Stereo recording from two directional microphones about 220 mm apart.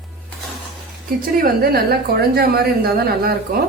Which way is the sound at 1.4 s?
45° right (ahead or behind).